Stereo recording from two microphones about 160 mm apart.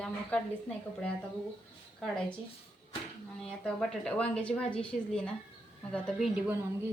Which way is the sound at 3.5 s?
5° left (ahead or behind).